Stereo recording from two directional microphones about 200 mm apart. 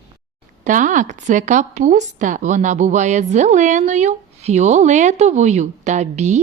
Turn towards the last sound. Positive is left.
turn(degrees=-35)  # may be behind; listen again after turning